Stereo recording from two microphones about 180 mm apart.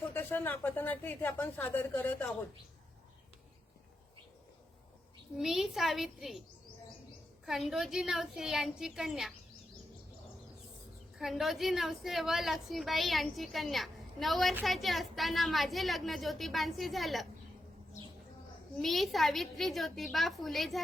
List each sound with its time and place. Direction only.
0.1 s speech: 10° left (ahead or behind)
5.4 s a woman's voice: centre (ahead or behind)
7.4 s a woman's voice: centre (ahead or behind)
11.2 s a woman's voice: centre (ahead or behind)
18.8 s a woman's voice: centre (ahead or behind)